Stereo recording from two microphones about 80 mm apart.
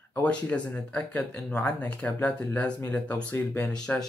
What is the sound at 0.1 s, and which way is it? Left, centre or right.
Speech, centre.